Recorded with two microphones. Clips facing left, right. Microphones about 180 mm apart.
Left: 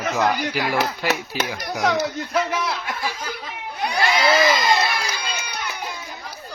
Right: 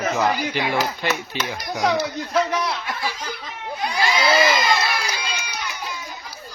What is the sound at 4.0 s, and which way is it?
Crowd, 60° left (ahead or behind).